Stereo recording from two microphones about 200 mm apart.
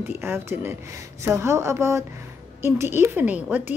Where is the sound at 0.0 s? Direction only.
10° right (ahead or behind).